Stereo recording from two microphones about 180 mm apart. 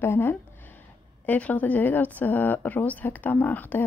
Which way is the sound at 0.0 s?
10° left (ahead or behind).